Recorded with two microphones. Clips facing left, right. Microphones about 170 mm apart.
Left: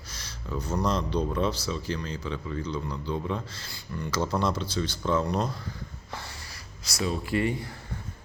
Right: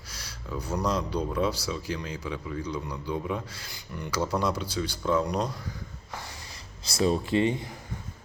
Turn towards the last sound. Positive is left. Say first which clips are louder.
# right 2 dB
turn(degrees=-20)  # may be behind; listen again after turning